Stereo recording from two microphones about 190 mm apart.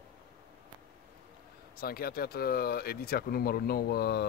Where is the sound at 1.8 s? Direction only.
50° left (ahead or behind).